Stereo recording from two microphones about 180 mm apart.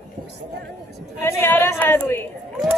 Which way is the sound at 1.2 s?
15° left (ahead or behind).